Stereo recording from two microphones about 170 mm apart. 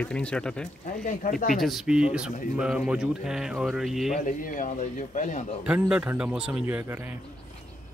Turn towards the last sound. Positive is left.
turn(degrees=-10)  # may be behind; listen again after turning